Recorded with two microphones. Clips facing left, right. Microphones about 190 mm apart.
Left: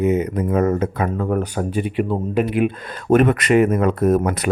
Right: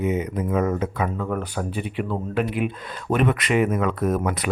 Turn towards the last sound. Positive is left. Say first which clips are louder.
# left 6 dB
turn(degrees=45)  # may be behind; listen again after turning